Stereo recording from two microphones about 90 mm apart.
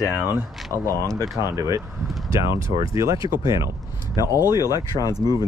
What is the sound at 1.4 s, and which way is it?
Speech, 35° right (ahead or behind).